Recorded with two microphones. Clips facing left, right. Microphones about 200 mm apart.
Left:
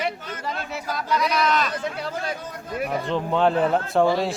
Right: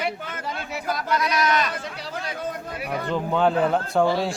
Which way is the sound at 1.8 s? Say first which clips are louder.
Left 4 dB; 50° left (ahead or behind).